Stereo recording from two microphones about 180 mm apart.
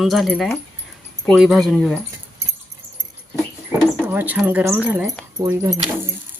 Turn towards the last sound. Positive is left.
turn(degrees=-20)  # may be behind; listen again after turning